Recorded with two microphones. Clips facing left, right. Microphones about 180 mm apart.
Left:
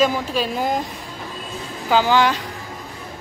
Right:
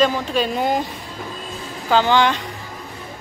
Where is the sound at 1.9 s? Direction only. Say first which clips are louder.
Even; 5° left (ahead or behind).